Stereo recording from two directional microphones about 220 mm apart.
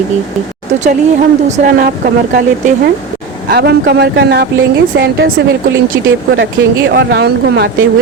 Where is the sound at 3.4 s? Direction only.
45° right (ahead or behind).